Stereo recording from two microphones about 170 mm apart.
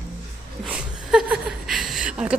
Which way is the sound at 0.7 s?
5° right (ahead or behind).